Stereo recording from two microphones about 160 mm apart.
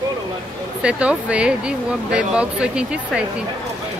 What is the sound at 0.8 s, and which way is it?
Speech, 5° right (ahead or behind).